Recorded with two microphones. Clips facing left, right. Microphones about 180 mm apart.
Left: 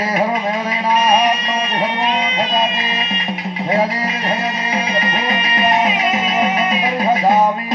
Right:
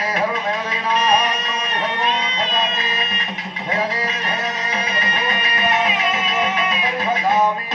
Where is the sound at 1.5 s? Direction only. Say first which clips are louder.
Left 5 dB; 35° left (ahead or behind).